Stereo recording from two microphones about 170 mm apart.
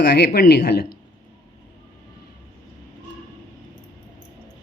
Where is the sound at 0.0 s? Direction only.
75° left (ahead or behind).